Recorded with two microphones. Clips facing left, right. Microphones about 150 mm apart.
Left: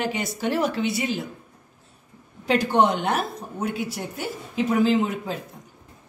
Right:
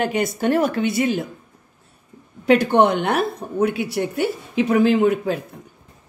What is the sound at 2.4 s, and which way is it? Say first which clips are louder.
A woman's voice: right 5 dB; 60° right (ahead or behind).